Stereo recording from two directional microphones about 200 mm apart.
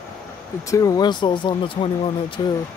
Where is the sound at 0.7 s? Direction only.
15° left (ahead or behind).